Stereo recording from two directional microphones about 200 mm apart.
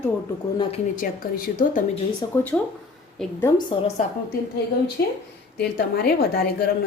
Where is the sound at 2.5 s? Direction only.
5° left (ahead or behind).